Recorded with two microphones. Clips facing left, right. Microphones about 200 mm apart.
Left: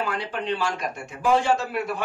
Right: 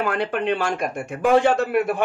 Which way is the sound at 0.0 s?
55° right (ahead or behind).